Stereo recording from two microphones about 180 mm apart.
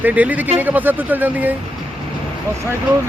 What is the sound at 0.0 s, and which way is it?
Speech, 10° right (ahead or behind).